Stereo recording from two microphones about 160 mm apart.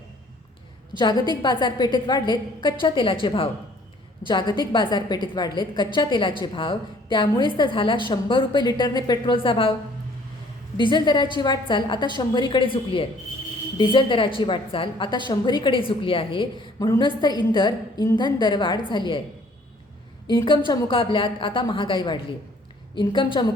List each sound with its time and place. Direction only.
0.9 s a woman's voice: 25° left (ahead or behind)
10.8 s a woman's voice: 30° left (ahead or behind)
20.2 s a woman's voice: 25° left (ahead or behind)